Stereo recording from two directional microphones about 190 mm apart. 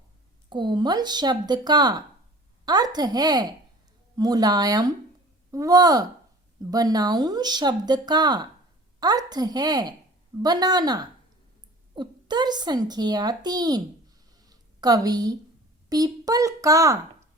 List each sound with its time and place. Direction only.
0.5 s speech: 25° right (ahead or behind)
14.3 s a sound: 20° right (ahead or behind)
15.9 s a child's voice: 20° right (ahead or behind)